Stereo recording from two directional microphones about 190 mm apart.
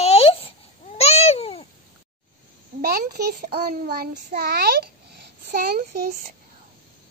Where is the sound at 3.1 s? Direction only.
55° right (ahead or behind).